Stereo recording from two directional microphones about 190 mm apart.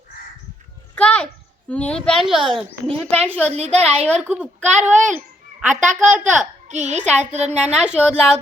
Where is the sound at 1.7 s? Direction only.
5° left (ahead or behind).